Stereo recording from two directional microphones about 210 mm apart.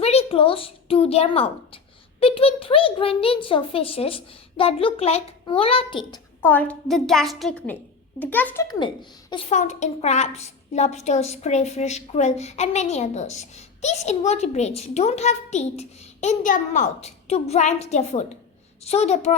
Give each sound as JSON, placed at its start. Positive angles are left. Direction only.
{"t": 0.0, "sound": "a child's voice", "side_deg": 30}
{"t": 6.4, "sound": "a woman's voice", "side_deg": 10}
{"t": 8.6, "sound": "a child's voice", "side_deg": 20}
{"t": 9.5, "sound": "a woman's voice", "side_deg": 35}